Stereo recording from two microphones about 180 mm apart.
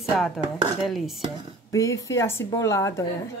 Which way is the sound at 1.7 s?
20° left (ahead or behind).